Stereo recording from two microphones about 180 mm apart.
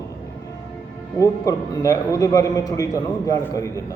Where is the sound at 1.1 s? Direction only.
20° left (ahead or behind).